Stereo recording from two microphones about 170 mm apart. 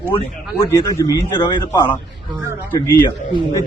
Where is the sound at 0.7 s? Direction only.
20° left (ahead or behind).